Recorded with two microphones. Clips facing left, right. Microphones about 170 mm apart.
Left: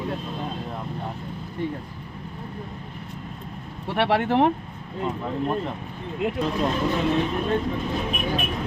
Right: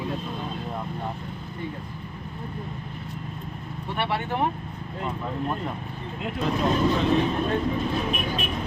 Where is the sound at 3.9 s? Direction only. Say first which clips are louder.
Left 7 dB; 75° left (ahead or behind).